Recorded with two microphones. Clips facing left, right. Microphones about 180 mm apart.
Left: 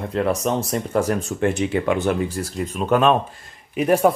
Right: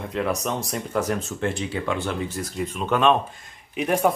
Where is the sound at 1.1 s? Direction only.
15° left (ahead or behind).